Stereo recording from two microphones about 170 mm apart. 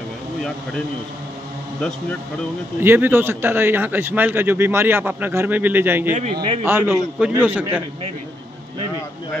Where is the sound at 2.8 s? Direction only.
15° right (ahead or behind).